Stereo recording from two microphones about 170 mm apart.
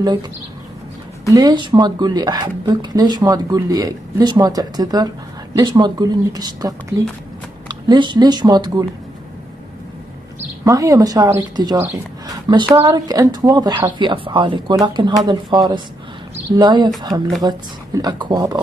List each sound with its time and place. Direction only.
1.3 s a woman's voice: 25° right (ahead or behind)
10.6 s a woman's voice: 20° right (ahead or behind)